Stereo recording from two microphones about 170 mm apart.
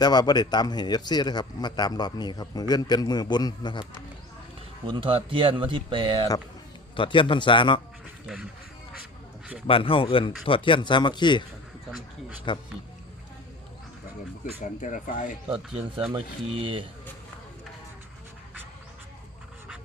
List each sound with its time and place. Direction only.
0.0 s a man's voice: 25° left (ahead or behind)
4.9 s speech: 30° right (ahead or behind)
6.9 s a man's voice: 30° left (ahead or behind)
9.6 s a man's voice: 30° left (ahead or behind)
12.5 s a man's voice: 30° left (ahead or behind)
14.6 s speech: 45° left (ahead or behind)
15.4 s speech: 35° right (ahead or behind)